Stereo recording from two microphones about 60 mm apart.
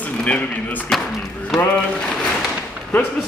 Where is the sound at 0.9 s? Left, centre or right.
Centre.